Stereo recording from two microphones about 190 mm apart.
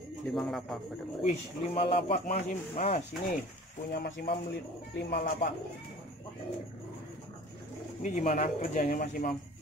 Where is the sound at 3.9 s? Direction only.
65° left (ahead or behind).